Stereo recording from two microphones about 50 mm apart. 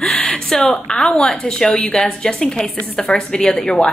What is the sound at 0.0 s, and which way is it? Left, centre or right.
A woman's voice, centre.